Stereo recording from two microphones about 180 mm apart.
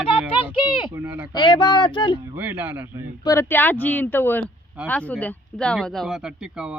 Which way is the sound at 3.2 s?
15° left (ahead or behind).